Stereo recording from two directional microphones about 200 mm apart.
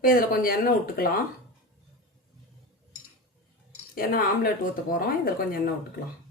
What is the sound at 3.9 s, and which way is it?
Speech, 45° left (ahead or behind).